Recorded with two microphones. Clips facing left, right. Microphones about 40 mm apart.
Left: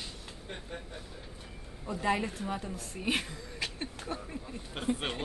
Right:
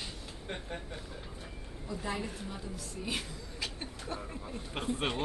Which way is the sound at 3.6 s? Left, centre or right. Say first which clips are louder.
Left 3 dB; centre.